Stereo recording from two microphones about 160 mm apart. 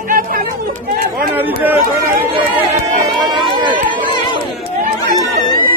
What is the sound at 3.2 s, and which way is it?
Run, 30° right (ahead or behind).